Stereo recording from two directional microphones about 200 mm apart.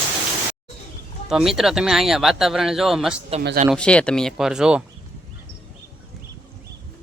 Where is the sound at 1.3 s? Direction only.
Centre (ahead or behind).